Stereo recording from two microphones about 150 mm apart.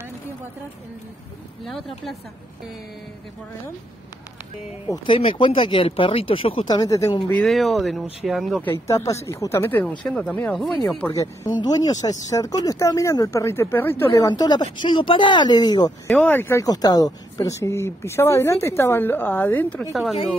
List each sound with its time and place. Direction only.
4.8 s speech: 30° left (ahead or behind)
6.7 s speech: 25° left (ahead or behind)
7.4 s speech: centre (ahead or behind)
8.8 s speech: 20° left (ahead or behind)
11.1 s speech: 25° left (ahead or behind)
16.1 s speech: 10° left (ahead or behind)
19.9 s speech: centre (ahead or behind)